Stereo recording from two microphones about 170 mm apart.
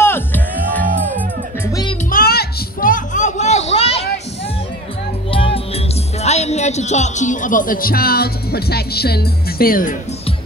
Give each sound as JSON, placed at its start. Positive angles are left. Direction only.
{"t": 0.0, "sound": "music", "side_deg": 10}
{"t": 2.0, "sound": "music", "side_deg": 60}
{"t": 5.3, "sound": "music", "side_deg": 30}
{"t": 6.2, "sound": "speech", "side_deg": 40}